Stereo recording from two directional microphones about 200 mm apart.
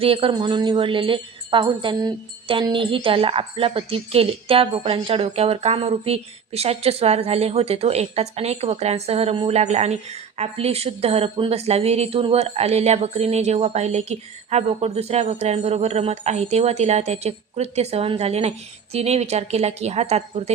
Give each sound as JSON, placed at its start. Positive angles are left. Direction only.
{"t": 0.0, "sound": "speech", "side_deg": -25}